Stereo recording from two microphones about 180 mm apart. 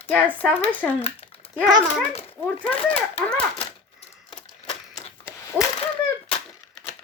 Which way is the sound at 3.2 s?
5° left (ahead or behind).